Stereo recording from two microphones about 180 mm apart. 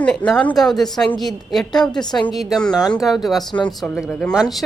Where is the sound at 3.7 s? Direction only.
Centre (ahead or behind).